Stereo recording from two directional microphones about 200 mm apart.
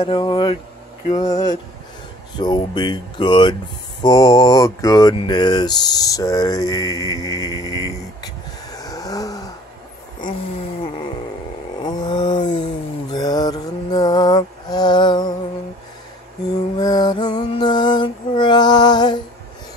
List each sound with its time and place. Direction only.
0.0 s speech: 25° left (ahead or behind)
2.4 s speech: 20° left (ahead or behind)
8.7 s vehicle: 15° left (ahead or behind)
11.8 s a sound: 20° left (ahead or behind)
13.1 s mantra: 20° left (ahead or behind)
16.7 s music: 20° left (ahead or behind)